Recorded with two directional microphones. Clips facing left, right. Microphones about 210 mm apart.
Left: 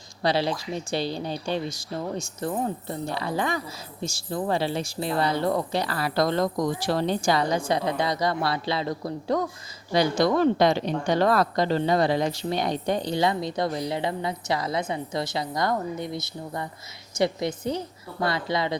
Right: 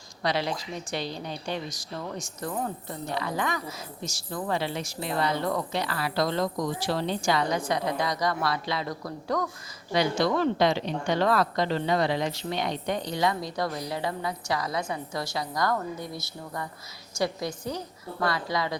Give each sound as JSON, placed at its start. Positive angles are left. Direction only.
{"t": 0.2, "sound": "speech", "side_deg": 30}
{"t": 9.9, "sound": "a woman's voice", "side_deg": 40}